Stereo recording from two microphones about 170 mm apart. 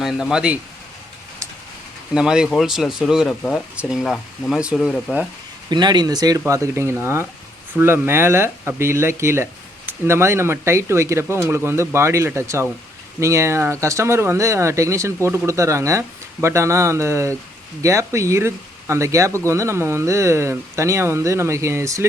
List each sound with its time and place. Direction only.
0.0 s speech: 5° right (ahead or behind)
2.1 s speech: 5° right (ahead or behind)
5.6 s speech: 25° right (ahead or behind)